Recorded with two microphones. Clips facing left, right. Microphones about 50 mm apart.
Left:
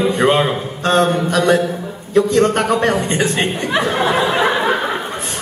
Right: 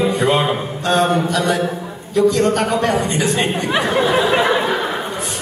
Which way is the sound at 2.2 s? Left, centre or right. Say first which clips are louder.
Left 1 dB; left.